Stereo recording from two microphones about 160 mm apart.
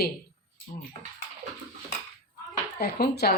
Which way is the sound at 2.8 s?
80° left.